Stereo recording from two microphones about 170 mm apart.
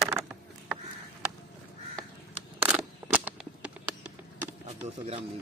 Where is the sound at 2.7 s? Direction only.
10° right (ahead or behind).